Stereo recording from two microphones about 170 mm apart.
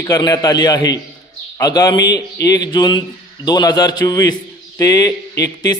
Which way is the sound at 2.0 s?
90° left.